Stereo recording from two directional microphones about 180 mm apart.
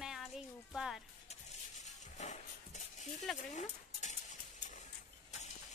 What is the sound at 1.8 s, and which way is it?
Dog, 40° left (ahead or behind).